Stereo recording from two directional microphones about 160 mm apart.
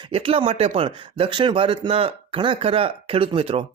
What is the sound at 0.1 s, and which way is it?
Speech, 35° right (ahead or behind).